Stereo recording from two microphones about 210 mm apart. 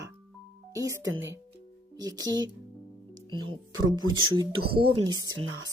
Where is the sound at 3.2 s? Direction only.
20° right (ahead or behind).